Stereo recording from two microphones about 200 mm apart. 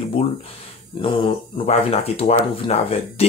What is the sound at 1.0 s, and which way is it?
Speech, 30° left (ahead or behind).